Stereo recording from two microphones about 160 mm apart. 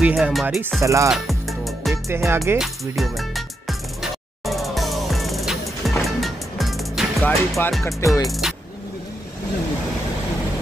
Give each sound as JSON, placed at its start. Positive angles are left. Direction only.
{"t": 0.0, "sound": "music", "side_deg": -5}
{"t": 0.7, "sound": "music", "side_deg": -20}
{"t": 1.1, "sound": "music", "side_deg": 0}
{"t": 2.0, "sound": "speech", "side_deg": -15}
{"t": 2.6, "sound": "music", "side_deg": 0}
{"t": 7.2, "sound": "speech", "side_deg": 15}
{"t": 8.3, "sound": "vehicle", "side_deg": 0}